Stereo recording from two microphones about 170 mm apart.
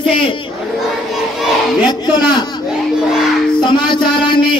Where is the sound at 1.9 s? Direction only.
25° left (ahead or behind).